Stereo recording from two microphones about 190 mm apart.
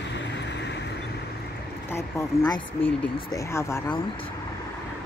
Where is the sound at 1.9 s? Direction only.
15° left (ahead or behind).